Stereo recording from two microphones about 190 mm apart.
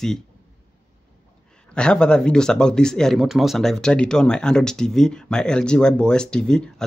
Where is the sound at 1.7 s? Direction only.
5° left (ahead or behind).